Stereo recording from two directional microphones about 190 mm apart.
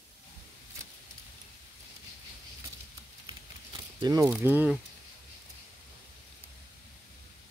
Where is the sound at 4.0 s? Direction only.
20° right (ahead or behind).